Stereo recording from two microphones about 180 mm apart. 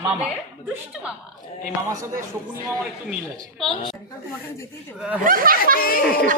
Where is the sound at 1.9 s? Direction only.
15° right (ahead or behind).